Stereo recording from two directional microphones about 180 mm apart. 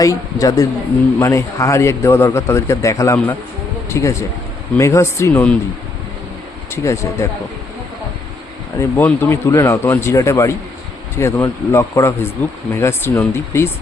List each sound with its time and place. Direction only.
0.0 s a man's voice: 20° left (ahead or behind)
6.7 s a man's voice: 15° left (ahead or behind)
8.8 s a man's voice: 10° left (ahead or behind)